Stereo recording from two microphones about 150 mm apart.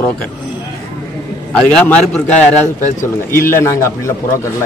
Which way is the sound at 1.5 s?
5° left (ahead or behind).